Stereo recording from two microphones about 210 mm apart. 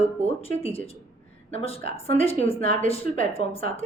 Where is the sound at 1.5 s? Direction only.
30° left (ahead or behind).